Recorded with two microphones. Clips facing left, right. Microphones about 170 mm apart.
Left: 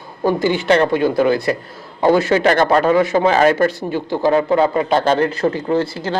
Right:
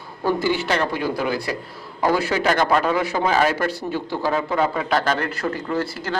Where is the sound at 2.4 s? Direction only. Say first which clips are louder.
Left 5 dB; 55° left (ahead or behind).